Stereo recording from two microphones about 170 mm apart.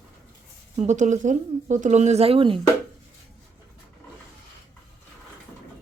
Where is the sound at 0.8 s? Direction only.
45° right (ahead or behind).